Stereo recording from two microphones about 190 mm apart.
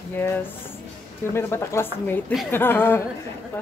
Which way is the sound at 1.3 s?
15° left (ahead or behind).